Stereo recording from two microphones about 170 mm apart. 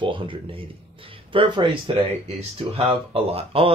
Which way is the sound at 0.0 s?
30° right (ahead or behind).